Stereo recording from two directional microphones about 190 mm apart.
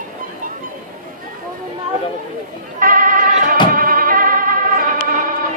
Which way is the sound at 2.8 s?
50° right (ahead or behind).